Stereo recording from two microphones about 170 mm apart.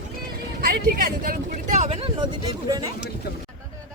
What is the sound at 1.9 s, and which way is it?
Speech, 30° right (ahead or behind).